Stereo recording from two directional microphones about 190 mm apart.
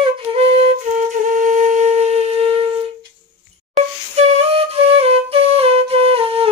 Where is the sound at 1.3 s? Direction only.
40° right (ahead or behind).